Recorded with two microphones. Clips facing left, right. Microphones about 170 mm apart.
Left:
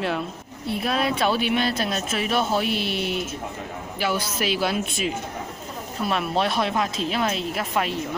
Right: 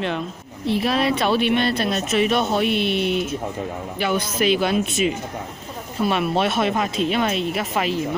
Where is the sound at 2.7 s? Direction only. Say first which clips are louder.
Right 5 dB; 55° right (ahead or behind).